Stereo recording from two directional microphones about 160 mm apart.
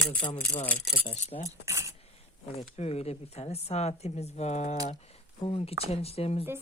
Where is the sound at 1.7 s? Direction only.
20° right (ahead or behind).